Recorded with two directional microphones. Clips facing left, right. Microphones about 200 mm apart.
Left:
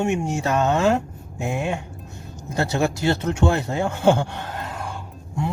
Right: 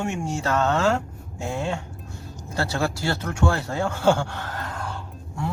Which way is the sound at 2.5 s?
20° left (ahead or behind).